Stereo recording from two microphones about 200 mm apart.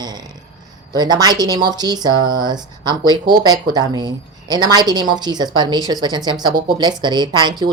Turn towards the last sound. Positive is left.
turn(degrees=-20)  # may be behind; listen again after turning